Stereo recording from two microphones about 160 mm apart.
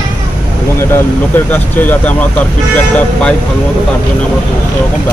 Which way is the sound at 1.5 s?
10° left (ahead or behind).